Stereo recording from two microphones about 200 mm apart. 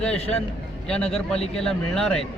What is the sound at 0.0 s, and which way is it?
A man's voice, 5° left (ahead or behind).